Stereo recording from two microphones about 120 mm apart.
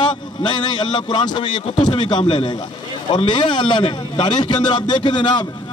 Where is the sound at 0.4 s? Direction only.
40° left (ahead or behind).